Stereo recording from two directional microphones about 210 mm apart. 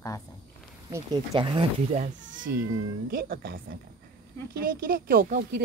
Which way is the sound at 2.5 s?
45° right (ahead or behind).